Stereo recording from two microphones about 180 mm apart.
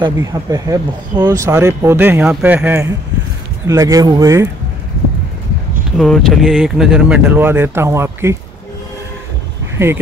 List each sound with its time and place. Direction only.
0.0 s speech: 20° right (ahead or behind)
5.9 s speech: centre (ahead or behind); by 8.4 s 15° right (ahead or behind)
9.8 s speech: 10° right (ahead or behind)